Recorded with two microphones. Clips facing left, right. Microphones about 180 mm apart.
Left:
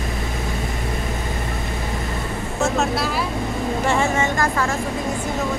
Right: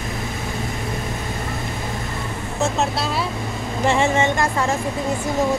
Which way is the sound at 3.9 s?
25° right (ahead or behind).